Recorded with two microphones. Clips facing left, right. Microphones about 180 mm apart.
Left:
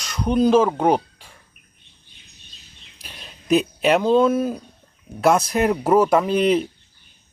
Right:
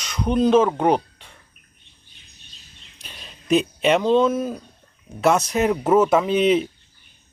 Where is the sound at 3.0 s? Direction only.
5° left (ahead or behind).